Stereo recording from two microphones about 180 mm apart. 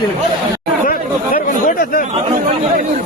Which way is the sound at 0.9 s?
50° left (ahead or behind).